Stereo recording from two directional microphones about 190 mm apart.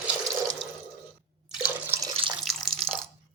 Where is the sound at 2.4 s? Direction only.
Centre (ahead or behind).